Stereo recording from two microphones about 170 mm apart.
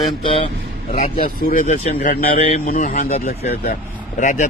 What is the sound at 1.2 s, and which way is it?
Speech, 50° left (ahead or behind).